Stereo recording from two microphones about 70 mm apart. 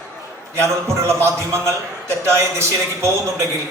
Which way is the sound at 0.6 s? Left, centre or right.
Right.